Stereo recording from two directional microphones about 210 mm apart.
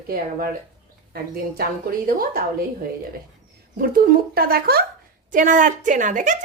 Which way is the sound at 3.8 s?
45° right (ahead or behind).